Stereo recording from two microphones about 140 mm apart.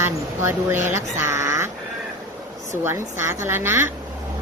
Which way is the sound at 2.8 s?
20° right (ahead or behind).